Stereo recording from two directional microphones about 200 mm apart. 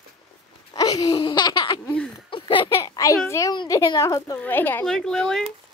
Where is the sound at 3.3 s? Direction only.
15° left (ahead or behind).